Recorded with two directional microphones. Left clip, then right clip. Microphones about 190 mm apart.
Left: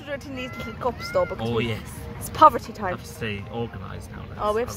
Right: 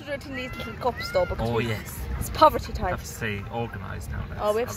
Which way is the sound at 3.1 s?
15° right (ahead or behind).